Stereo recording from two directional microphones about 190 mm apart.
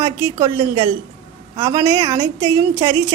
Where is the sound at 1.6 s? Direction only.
25° right (ahead or behind).